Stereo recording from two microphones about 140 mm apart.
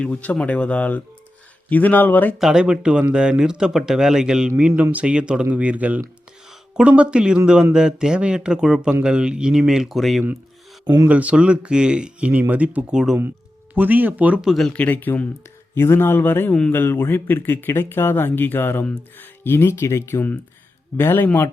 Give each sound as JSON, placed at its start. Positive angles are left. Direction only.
{"t": 0.0, "sound": "speech", "side_deg": 10}
{"t": 2.4, "sound": "speech", "side_deg": -5}
{"t": 10.8, "sound": "speech", "side_deg": -25}
{"t": 11.1, "sound": "speech", "side_deg": -10}